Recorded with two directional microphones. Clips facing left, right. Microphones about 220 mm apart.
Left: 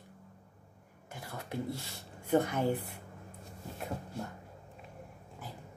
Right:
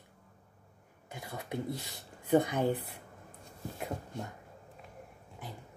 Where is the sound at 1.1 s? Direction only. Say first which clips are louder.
Right 2 dB; 15° right (ahead or behind).